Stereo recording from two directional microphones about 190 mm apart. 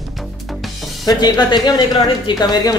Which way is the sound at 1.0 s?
20° left (ahead or behind).